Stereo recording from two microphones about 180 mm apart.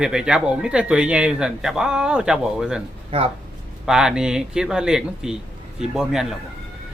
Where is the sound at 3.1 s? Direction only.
30° right (ahead or behind).